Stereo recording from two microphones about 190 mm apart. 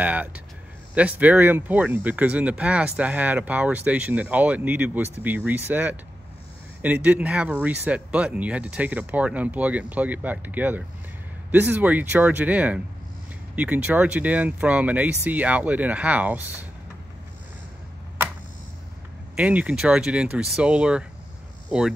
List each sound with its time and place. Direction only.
0.0 s speech: 10° right (ahead or behind)
19.3 s speech: 5° right (ahead or behind)